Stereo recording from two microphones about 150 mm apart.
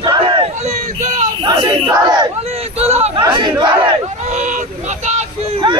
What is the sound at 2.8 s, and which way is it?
Speech, 45° right (ahead or behind).